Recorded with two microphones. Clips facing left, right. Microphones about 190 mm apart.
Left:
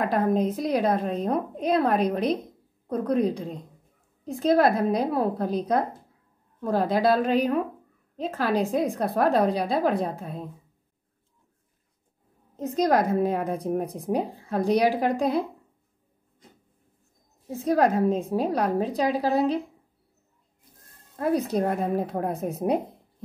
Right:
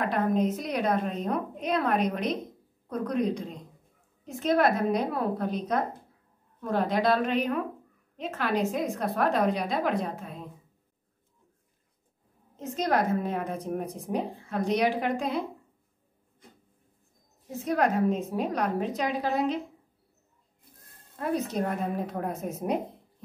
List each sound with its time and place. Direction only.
0.0 s a woman's voice: 35° left (ahead or behind)
12.5 s a woman's voice: 40° left (ahead or behind)
17.5 s a woman's voice: 35° left (ahead or behind)
21.2 s a woman's voice: 35° left (ahead or behind)